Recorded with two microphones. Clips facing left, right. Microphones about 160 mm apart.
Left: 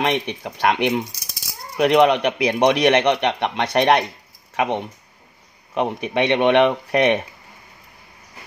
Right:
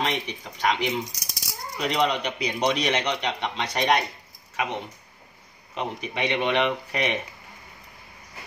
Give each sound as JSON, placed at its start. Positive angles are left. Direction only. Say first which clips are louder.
{"t": 0.0, "sound": "speech", "louder": "left 7 dB", "side_deg": 65}